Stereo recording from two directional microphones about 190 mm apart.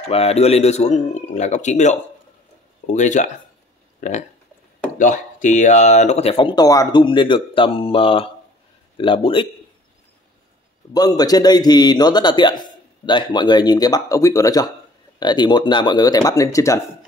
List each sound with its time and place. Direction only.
0.1 s a man's voice: 30° left (ahead or behind)
4.9 s a man's voice: 40° left (ahead or behind); by 9.5 s 25° left (ahead or behind)
10.9 s a man's voice: 20° left (ahead or behind)